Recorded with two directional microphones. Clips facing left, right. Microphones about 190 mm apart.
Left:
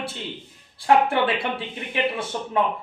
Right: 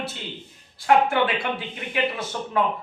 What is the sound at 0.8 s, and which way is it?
A man's voice, 30° left (ahead or behind).